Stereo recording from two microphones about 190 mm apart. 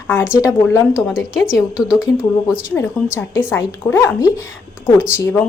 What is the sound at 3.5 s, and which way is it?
Speech, 15° left (ahead or behind).